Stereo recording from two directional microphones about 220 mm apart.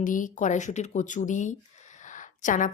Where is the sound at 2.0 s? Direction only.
35° left (ahead or behind).